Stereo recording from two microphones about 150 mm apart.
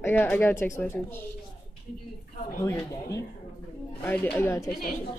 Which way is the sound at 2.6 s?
20° left (ahead or behind).